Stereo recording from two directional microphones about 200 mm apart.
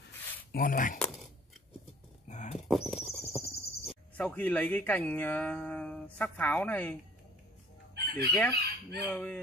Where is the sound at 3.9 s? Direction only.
5° left (ahead or behind).